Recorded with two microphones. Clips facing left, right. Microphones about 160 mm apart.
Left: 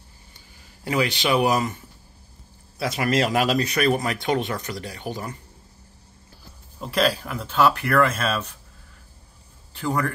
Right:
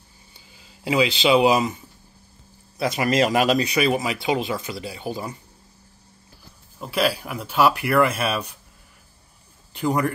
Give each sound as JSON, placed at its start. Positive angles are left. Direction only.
{"t": 0.8, "sound": "speech", "side_deg": -10}
{"t": 2.8, "sound": "speech", "side_deg": 0}
{"t": 6.8, "sound": "speech", "side_deg": -5}
{"t": 9.8, "sound": "speech", "side_deg": -15}